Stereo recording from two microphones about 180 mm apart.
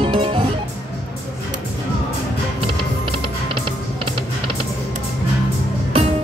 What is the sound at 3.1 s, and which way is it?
Music, 30° right (ahead or behind).